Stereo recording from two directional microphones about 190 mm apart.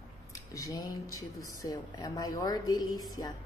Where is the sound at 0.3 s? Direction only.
15° left (ahead or behind).